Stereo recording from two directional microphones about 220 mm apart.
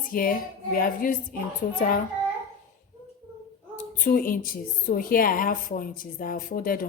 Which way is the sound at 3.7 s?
40° left (ahead or behind).